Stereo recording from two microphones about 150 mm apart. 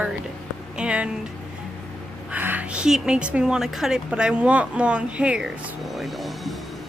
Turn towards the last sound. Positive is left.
turn(degrees=0)  # may be behind; listen again after turning